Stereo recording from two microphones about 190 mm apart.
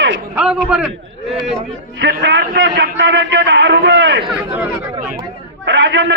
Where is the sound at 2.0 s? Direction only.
65° right (ahead or behind).